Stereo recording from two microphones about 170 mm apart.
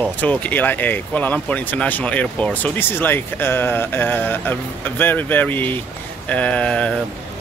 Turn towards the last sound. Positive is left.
turn(degrees=5)  # may be behind; listen again after turning